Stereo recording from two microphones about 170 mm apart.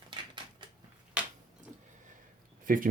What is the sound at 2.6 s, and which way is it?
Speech, 55° right (ahead or behind).